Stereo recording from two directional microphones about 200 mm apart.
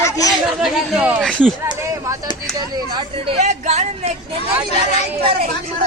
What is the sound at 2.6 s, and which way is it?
Speech, 20° right (ahead or behind).